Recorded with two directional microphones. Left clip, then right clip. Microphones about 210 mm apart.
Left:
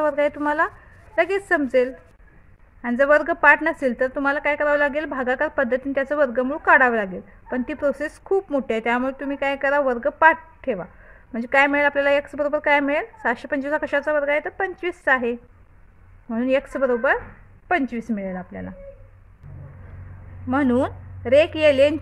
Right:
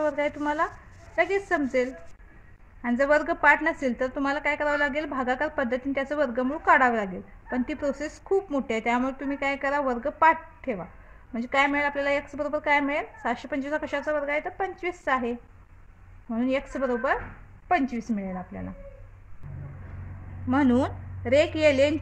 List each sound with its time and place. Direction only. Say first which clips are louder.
0.0 s a woman's voice: left 6 dB; 35° left (ahead or behind)
20.4 s a woman's voice: left 3 dB; 25° left (ahead or behind)